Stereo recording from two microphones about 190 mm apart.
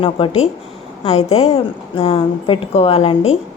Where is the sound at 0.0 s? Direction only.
30° left (ahead or behind).